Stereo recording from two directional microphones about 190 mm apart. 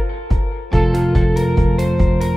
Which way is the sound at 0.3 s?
Centre (ahead or behind).